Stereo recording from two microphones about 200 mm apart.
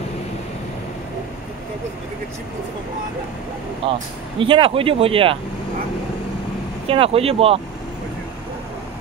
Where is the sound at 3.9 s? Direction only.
25° right (ahead or behind).